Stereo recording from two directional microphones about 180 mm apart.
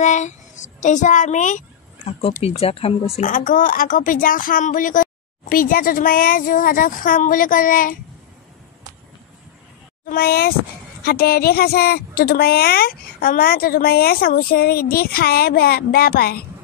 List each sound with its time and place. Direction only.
0.0 s speech: 40° left (ahead or behind)
3.2 s speech: 45° left (ahead or behind)
10.0 s a woman's voice: 55° left (ahead or behind)